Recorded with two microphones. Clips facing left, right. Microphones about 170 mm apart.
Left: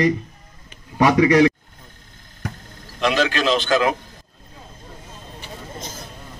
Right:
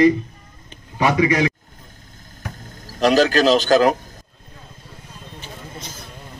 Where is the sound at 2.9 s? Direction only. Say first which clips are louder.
Right 5 dB; 40° right (ahead or behind).